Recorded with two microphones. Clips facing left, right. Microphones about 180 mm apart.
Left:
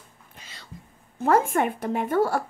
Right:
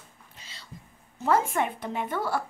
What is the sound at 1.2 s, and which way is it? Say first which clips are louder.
Speech: left 4 dB; 50° left (ahead or behind).